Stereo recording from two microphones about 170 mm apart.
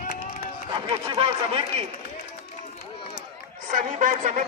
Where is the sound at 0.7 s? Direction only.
30° right (ahead or behind).